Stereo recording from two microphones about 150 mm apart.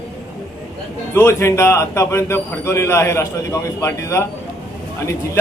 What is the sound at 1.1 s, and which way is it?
A man's voice, 15° left (ahead or behind).